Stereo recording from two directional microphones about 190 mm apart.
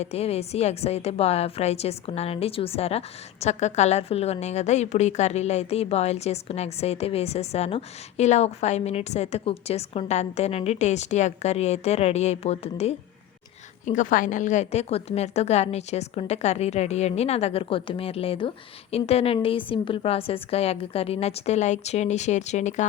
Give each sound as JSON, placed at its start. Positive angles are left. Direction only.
{"t": 0.0, "sound": "a woman's voice", "side_deg": 35}